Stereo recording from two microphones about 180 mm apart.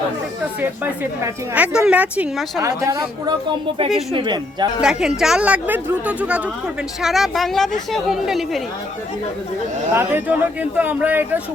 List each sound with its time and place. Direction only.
1.2 s speech: 10° right (ahead or behind)
4.1 s speech: 25° right (ahead or behind)
4.8 s a woman's voice: 5° right (ahead or behind)
9.9 s speech: 10° right (ahead or behind)